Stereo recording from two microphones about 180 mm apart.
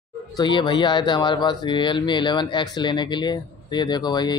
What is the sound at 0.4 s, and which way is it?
Speech, 25° left (ahead or behind).